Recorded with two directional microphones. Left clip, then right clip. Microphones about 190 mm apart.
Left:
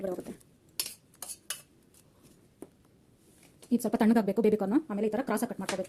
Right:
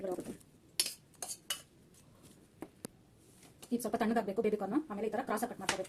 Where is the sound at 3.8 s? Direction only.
50° left (ahead or behind).